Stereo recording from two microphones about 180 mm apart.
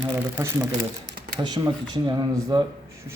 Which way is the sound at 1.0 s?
65° right (ahead or behind).